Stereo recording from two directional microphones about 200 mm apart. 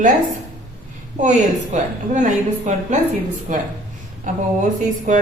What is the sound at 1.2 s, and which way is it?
A woman's voice, 40° right (ahead or behind).